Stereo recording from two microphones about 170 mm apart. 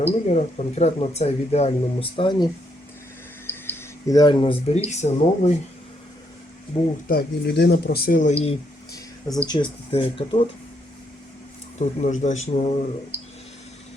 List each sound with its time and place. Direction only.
0.3 s speech: 40° left (ahead or behind)
3.4 s speech: 15° left (ahead or behind); by 5.5 s 40° left (ahead or behind)
7.1 s speech: 70° left (ahead or behind); by 8.5 s 40° left (ahead or behind)
8.9 s a sound: 20° left (ahead or behind)
9.5 s speech: 30° left (ahead or behind)
11.8 s speech: 45° left (ahead or behind)